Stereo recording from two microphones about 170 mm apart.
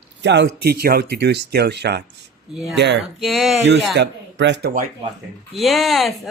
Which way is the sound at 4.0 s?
90° right.